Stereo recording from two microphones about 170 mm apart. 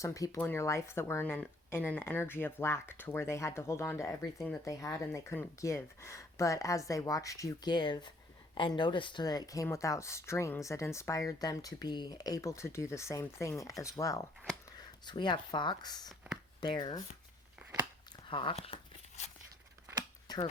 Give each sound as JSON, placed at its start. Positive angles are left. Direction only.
{"t": 0.0, "sound": "speech", "side_deg": 20}
{"t": 17.6, "sound": "chewing", "side_deg": -5}
{"t": 18.3, "sound": "a sound", "side_deg": 30}
{"t": 20.2, "sound": "shuffling cards", "side_deg": 25}